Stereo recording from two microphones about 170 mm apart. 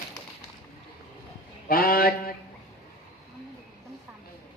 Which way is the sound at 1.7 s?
60° left (ahead or behind).